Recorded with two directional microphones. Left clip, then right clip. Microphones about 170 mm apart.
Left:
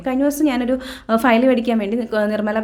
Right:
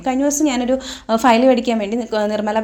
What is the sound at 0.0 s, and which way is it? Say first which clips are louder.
A woman's voice: right 1 dB; centre (ahead or behind).